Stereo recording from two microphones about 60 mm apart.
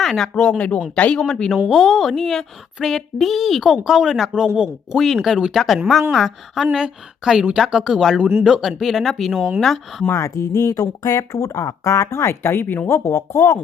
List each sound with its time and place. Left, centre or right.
0.0 s speech: centre; by 1.2 s left
1.2 s speech: centre
10.1 s speech: left
12.9 s speech: left